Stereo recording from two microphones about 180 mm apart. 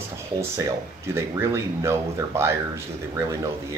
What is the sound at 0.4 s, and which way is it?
Speech, 15° right (ahead or behind).